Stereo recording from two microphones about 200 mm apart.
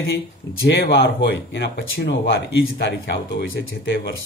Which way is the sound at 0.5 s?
50° left (ahead or behind).